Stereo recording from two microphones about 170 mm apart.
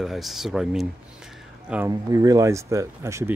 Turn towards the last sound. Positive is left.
turn(degrees=-15)  # may be behind; listen again after turning